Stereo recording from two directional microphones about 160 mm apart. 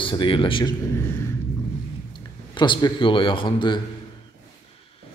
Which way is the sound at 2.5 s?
30° left (ahead or behind).